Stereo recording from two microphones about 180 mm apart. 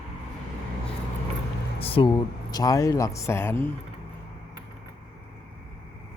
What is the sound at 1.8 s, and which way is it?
Speech, 30° left (ahead or behind).